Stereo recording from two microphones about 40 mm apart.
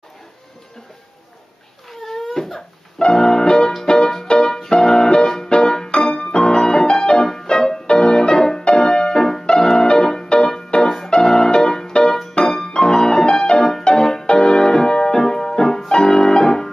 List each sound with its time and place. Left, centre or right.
1.9 s crying: centre
3.0 s music: centre
3.8 s piano: centre
12.2 s music: centre
15.9 s piano: centre